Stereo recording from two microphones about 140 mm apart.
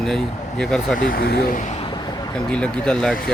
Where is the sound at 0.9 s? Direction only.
90° left.